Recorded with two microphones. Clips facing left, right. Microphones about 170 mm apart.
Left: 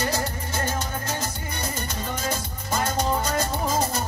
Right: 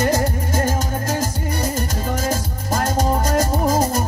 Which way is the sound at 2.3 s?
45° right (ahead or behind).